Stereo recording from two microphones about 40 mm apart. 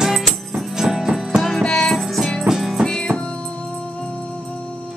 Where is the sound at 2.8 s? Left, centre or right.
Centre.